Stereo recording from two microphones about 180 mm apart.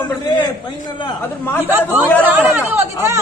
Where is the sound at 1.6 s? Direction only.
10° right (ahead or behind).